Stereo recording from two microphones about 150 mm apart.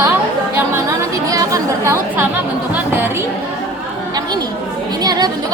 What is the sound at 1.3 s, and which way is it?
Chatter, 25° right (ahead or behind).